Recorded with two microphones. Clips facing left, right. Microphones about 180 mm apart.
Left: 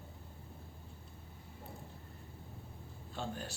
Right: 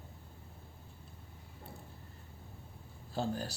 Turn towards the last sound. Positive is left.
turn(degrees=-35)  # may be behind; listen again after turning